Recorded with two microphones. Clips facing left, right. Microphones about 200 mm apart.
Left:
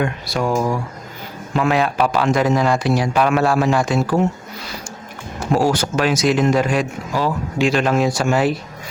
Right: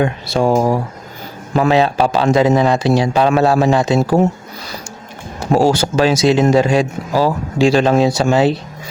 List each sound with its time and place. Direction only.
0.0 s speech: 30° right (ahead or behind)
5.5 s speech: 25° right (ahead or behind)